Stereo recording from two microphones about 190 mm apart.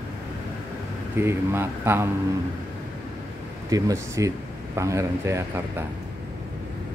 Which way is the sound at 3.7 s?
15° right (ahead or behind).